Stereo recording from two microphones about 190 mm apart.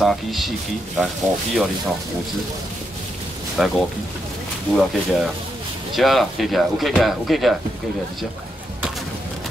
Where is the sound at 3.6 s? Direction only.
Centre (ahead or behind).